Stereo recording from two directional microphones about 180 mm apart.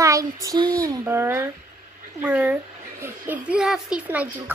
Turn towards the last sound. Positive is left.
turn(degrees=-10)  # may be behind; listen again after turning